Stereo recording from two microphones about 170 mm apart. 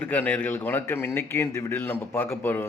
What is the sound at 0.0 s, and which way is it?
A man's voice, 10° left (ahead or behind).